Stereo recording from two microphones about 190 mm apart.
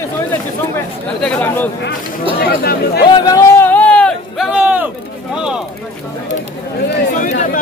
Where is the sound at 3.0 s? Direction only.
25° left (ahead or behind).